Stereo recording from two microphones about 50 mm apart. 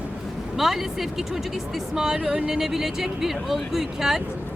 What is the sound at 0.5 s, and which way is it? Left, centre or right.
Speech, centre.